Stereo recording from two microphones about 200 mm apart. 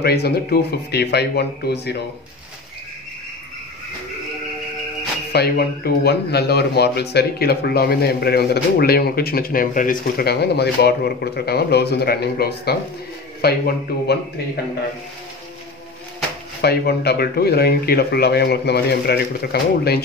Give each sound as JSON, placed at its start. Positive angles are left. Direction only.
{"t": 0.0, "sound": "speech", "side_deg": 55}
{"t": 5.3, "sound": "speech", "side_deg": 55}
{"t": 16.6, "sound": "speech", "side_deg": 55}